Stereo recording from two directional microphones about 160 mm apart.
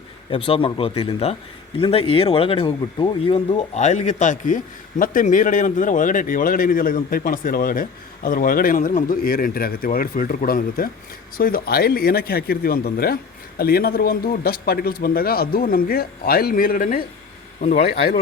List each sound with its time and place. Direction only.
0.3 s speech: 35° left (ahead or behind)
3.8 s a man's voice: 50° left (ahead or behind)
17.6 s speech: 40° left (ahead or behind)